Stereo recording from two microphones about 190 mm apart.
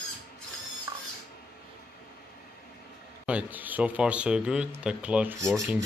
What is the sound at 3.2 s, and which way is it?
A man's voice, 10° right (ahead or behind).